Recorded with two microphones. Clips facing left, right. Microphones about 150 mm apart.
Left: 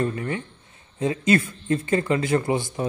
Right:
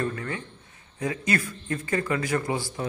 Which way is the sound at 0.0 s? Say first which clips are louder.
Left 4 dB; 20° left (ahead or behind).